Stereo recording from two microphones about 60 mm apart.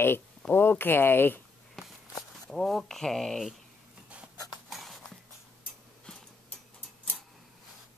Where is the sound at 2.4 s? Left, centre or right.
Centre.